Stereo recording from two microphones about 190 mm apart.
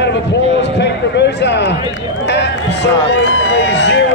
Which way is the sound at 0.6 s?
65° left (ahead or behind).